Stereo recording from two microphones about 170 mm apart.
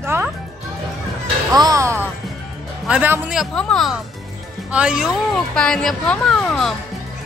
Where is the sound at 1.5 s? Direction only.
20° right (ahead or behind).